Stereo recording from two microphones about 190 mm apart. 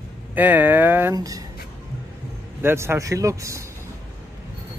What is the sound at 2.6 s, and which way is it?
Speech, 10° right (ahead or behind).